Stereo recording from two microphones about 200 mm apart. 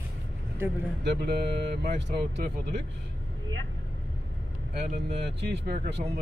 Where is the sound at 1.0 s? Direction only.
55° right (ahead or behind).